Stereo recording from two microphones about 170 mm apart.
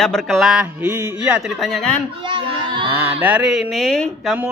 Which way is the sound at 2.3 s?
30° right (ahead or behind).